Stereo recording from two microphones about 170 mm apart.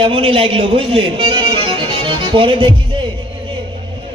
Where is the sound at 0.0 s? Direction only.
35° right (ahead or behind).